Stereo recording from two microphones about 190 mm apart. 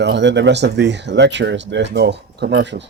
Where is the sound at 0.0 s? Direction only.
70° right (ahead or behind).